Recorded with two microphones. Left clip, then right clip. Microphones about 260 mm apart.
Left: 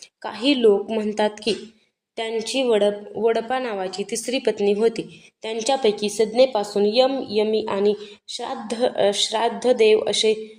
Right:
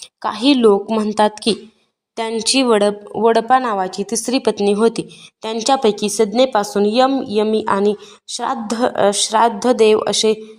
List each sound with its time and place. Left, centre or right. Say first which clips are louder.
0.2 s a woman's voice: right 5 dB; right